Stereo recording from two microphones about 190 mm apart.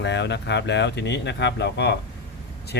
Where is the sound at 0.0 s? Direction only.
65° left (ahead or behind).